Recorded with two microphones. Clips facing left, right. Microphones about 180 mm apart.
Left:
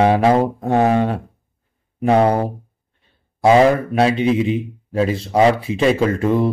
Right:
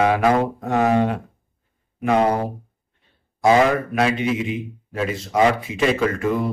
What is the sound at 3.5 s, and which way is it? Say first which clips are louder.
A man's voice: left 4 dB; 30° left (ahead or behind).